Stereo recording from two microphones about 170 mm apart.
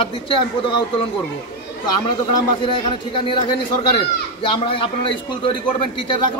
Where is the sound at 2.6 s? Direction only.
30° left (ahead or behind).